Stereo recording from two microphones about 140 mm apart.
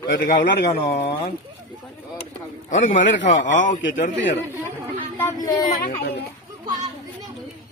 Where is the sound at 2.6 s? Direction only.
60° left (ahead or behind).